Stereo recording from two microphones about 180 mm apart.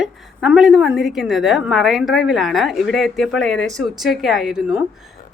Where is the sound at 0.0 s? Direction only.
5° right (ahead or behind).